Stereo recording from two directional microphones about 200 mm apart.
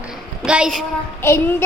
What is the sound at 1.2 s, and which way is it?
Speech, 10° left (ahead or behind).